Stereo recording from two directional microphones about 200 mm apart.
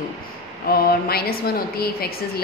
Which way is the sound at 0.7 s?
50° left (ahead or behind).